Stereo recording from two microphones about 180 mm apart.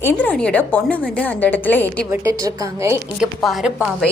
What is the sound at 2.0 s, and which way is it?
Speech, 15° right (ahead or behind).